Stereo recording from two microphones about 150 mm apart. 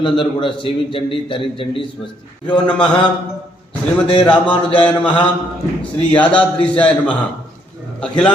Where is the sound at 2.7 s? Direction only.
5° left (ahead or behind).